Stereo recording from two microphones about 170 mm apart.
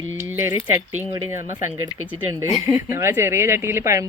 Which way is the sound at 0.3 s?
15° right (ahead or behind).